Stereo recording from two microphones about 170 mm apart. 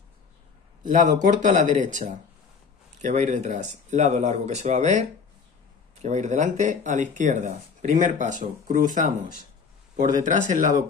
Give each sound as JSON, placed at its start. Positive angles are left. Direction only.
{"t": 0.8, "sound": "speech", "side_deg": -45}